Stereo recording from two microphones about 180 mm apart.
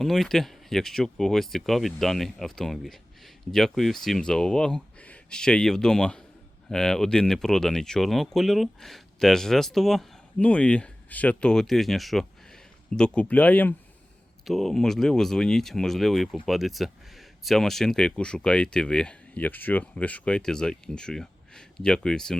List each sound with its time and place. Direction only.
0.0 s speech: centre (ahead or behind)